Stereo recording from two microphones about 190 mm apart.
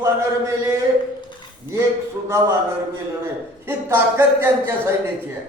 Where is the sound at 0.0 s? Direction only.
15° right (ahead or behind).